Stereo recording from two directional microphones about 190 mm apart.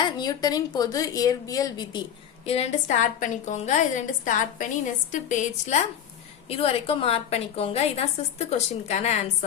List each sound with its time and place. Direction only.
0.0 s a woman's voice: 20° left (ahead or behind)
2.5 s a woman's voice: 35° left (ahead or behind)